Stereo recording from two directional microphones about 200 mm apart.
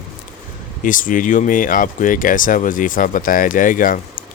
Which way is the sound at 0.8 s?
40° left (ahead or behind).